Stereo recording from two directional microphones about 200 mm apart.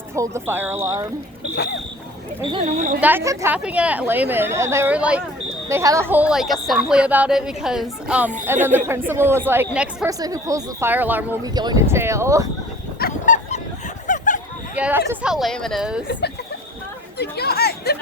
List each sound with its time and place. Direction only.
0.1 s a woman's voice: 15° right (ahead or behind)
2.5 s speech: 35° right (ahead or behind)
3.0 s a woman's voice: 10° right (ahead or behind)
10.1 s a woman's voice: 15° right (ahead or behind)
13.0 s a sound: 45° left (ahead or behind)
14.8 s speech: 10° right (ahead or behind)
17.2 s chatter: 50° left (ahead or behind)